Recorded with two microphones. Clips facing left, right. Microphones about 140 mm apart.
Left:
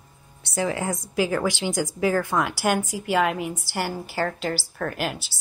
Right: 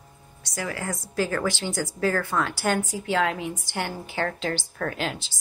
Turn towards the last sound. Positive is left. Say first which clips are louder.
# left 1 dB
turn(degrees=10)  # may be behind; listen again after turning